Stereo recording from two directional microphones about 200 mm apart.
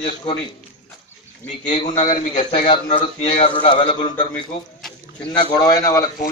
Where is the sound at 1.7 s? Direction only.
25° left (ahead or behind).